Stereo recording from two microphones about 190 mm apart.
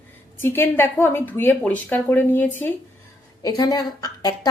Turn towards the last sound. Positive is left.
turn(degrees=20)  # may be behind; listen again after turning